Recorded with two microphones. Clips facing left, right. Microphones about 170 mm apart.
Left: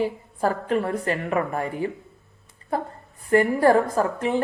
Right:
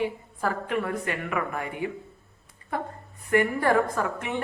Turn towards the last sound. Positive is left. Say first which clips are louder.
# left 6 dB
turn(degrees=35)  # may be behind; listen again after turning